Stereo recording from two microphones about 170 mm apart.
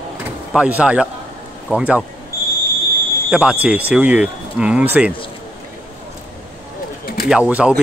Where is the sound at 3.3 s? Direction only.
5° right (ahead or behind).